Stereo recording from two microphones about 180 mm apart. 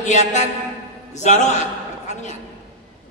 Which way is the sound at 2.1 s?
40° left (ahead or behind).